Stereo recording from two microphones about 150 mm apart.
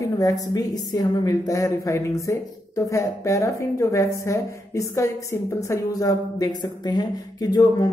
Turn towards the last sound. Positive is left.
turn(degrees=25)  # may be behind; listen again after turning